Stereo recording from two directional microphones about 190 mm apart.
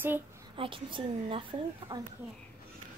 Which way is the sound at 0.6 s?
25° right (ahead or behind).